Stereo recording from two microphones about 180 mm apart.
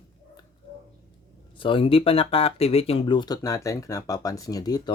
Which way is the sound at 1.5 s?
30° left (ahead or behind).